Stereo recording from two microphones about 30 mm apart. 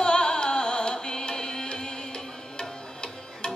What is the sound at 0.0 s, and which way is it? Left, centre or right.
Music, left.